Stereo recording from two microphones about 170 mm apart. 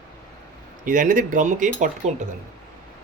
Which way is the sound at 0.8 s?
50° right (ahead or behind).